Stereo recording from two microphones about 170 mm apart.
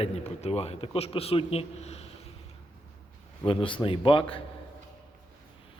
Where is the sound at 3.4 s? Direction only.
30° left (ahead or behind).